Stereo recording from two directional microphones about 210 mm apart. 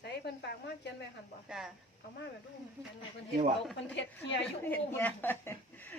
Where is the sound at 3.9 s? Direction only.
60° left (ahead or behind).